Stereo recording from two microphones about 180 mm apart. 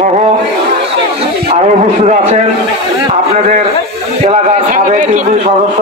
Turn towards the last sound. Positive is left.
turn(degrees=-45)  # may be behind; listen again after turning